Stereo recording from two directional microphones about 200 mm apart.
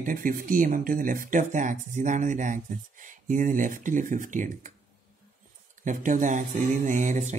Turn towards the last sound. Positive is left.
turn(degrees=-35)  # may be behind; listen again after turning